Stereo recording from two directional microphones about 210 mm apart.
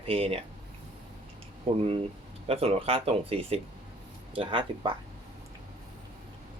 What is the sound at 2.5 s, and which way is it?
Speech, 30° right (ahead or behind).